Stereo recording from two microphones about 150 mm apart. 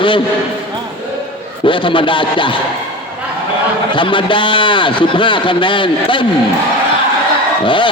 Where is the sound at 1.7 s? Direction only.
35° left (ahead or behind).